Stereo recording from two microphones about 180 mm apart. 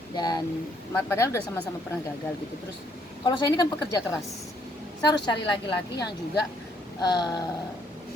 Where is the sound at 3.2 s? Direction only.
25° left (ahead or behind).